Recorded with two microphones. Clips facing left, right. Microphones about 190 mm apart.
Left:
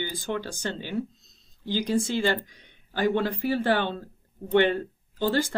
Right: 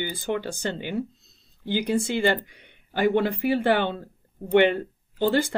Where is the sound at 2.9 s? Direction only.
15° right (ahead or behind).